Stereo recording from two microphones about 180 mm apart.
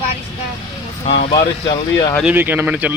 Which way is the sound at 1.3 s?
25° left (ahead or behind).